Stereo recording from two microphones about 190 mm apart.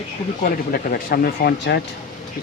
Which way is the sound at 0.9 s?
50° left (ahead or behind).